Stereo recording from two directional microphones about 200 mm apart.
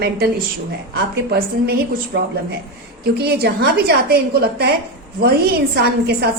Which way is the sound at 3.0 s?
55° right (ahead or behind).